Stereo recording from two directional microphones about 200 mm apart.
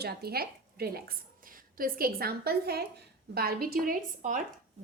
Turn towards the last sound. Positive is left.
turn(degrees=-40)  # may be behind; listen again after turning